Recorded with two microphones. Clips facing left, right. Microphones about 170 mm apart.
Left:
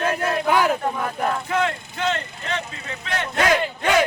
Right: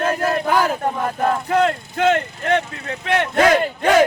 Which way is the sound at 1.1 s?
40° right (ahead or behind).